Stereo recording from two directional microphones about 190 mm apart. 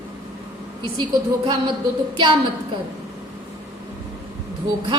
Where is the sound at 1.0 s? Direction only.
25° right (ahead or behind).